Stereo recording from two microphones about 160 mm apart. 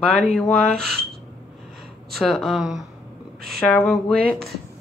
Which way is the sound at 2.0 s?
Centre (ahead or behind).